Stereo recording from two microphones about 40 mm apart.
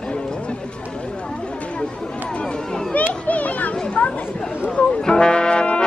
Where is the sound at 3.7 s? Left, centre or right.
Left.